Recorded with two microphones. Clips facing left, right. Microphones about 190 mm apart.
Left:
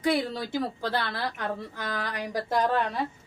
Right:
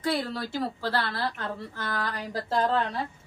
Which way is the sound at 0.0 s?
15° left (ahead or behind).